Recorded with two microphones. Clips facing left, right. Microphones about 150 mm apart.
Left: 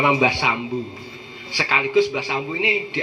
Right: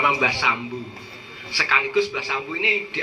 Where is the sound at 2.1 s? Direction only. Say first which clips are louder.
Left 4 dB; 20° left (ahead or behind).